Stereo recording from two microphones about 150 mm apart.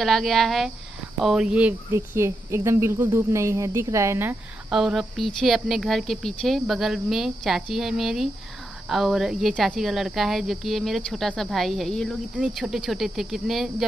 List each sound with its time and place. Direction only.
0.0 s speech: centre (ahead or behind); by 4.4 s 15° right (ahead or behind)
4.6 s speech: 5° right (ahead or behind)